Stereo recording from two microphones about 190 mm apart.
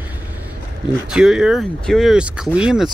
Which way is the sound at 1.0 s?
5° right (ahead or behind).